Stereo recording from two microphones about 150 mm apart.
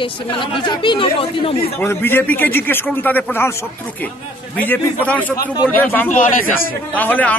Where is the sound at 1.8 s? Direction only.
15° left (ahead or behind).